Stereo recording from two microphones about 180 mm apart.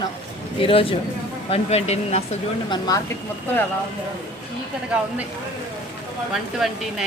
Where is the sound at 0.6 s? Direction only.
30° left (ahead or behind).